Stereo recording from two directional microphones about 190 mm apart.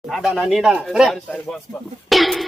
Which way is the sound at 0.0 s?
Centre (ahead or behind).